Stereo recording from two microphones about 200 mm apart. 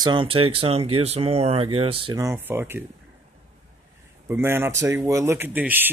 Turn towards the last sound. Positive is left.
turn(degrees=-10)  # may be behind; listen again after turning